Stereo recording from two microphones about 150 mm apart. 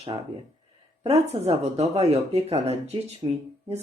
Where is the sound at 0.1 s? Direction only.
30° right (ahead or behind).